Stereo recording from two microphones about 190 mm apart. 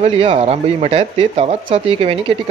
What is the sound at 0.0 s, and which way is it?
Speech, 30° right (ahead or behind).